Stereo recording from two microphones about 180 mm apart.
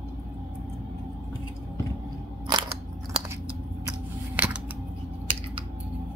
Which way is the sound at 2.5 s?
25° right (ahead or behind).